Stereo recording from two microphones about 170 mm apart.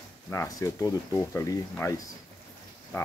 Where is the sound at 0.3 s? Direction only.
20° left (ahead or behind).